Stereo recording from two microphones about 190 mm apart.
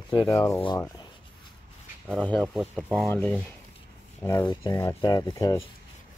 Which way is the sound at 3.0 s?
10° left (ahead or behind).